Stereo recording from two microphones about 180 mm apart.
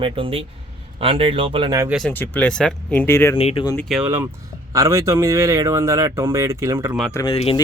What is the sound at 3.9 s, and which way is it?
Speech, 10° right (ahead or behind).